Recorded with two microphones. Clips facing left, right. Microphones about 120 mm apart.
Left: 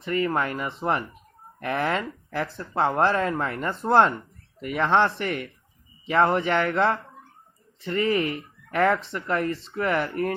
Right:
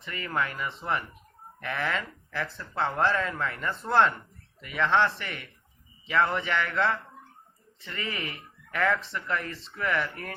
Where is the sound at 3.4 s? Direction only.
45° left (ahead or behind).